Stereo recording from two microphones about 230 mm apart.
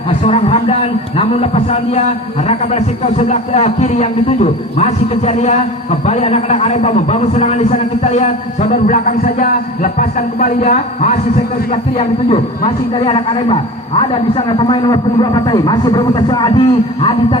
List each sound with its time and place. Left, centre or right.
0.3 s a man's voice: left